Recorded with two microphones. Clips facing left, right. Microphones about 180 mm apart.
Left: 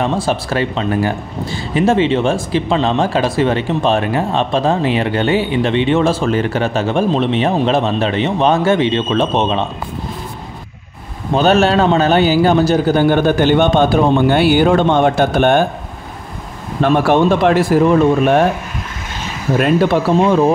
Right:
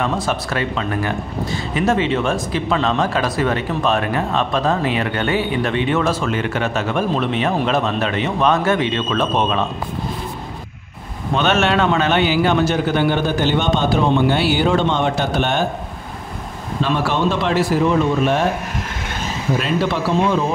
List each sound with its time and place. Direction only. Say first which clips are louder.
0.0 s speech: left 4 dB; 30° left (ahead or behind)
11.3 s a man's voice: left 5 dB; 35° left (ahead or behind); by 15.6 s 50° left (ahead or behind)
16.8 s a man's voice: left 7 dB; 55° left (ahead or behind)
19.6 s a man's voice: left 9 dB; 50° left (ahead or behind)